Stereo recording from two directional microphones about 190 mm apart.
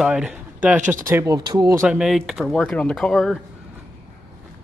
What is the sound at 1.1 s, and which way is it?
Speech, 15° right (ahead or behind).